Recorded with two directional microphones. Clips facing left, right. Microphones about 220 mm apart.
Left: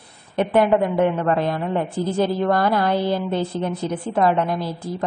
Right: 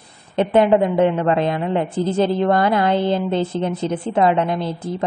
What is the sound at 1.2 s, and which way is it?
A woman's voice, 20° right (ahead or behind).